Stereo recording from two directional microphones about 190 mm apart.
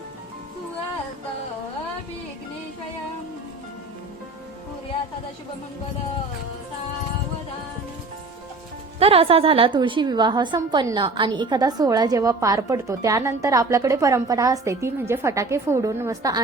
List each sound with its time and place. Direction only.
9.0 s a woman's voice: 30° right (ahead or behind)